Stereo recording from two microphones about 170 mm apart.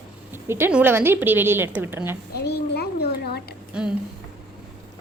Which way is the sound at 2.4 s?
70° left (ahead or behind).